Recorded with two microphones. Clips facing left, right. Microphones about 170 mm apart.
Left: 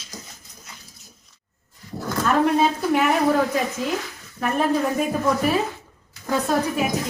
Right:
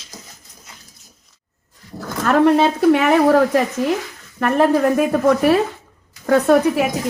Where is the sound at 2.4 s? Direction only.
70° right (ahead or behind).